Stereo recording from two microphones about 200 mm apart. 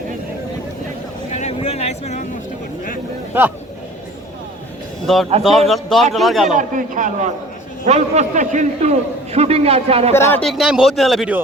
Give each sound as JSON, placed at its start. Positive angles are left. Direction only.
{"t": 1.3, "sound": "vehicle", "side_deg": 35}
{"t": 5.0, "sound": "a man's voice", "side_deg": 0}
{"t": 6.4, "sound": "a man's voice", "side_deg": -40}
{"t": 10.1, "sound": "a man's voice", "side_deg": 10}